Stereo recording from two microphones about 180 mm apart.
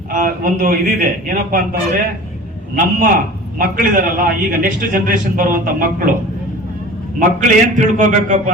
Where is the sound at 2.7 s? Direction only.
50° right (ahead or behind).